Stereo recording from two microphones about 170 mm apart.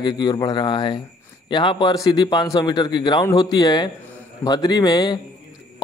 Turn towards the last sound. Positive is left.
turn(degrees=25)  # may be behind; listen again after turning